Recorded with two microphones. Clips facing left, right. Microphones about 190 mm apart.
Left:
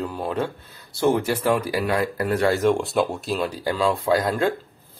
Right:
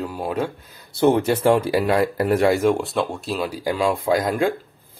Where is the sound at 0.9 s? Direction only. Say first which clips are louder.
Right 3 dB; 20° right (ahead or behind).